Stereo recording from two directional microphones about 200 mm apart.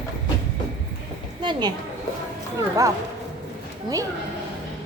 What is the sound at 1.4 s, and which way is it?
Speech, 20° right (ahead or behind).